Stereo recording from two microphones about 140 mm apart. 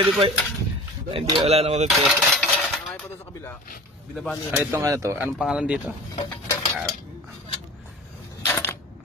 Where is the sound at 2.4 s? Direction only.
Centre (ahead or behind).